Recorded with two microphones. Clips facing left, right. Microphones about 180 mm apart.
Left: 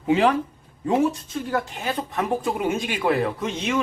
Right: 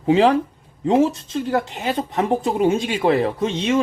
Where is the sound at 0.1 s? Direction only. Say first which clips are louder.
Right 4 dB; 30° right (ahead or behind).